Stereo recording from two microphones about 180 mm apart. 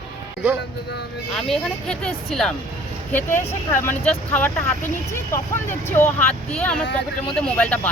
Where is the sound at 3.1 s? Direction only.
10° left (ahead or behind).